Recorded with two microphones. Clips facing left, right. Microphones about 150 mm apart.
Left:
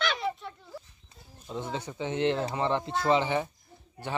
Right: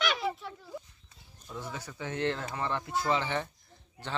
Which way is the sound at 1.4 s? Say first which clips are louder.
Left 6 dB; 25° left (ahead or behind).